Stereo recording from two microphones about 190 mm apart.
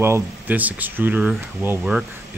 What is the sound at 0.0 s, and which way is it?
Speech, 10° right (ahead or behind).